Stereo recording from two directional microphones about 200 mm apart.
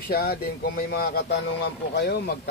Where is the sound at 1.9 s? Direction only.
60° left (ahead or behind).